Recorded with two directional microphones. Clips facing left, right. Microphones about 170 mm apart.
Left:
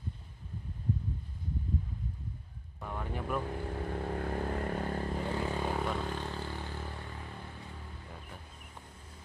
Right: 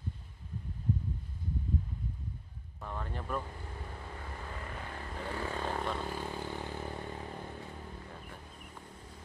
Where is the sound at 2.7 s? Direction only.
10° left (ahead or behind).